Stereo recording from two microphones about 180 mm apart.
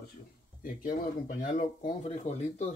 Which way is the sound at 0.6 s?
50° left (ahead or behind).